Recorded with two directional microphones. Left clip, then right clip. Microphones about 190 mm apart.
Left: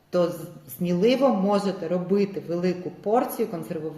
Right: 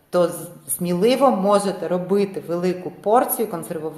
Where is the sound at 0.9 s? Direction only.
10° left (ahead or behind).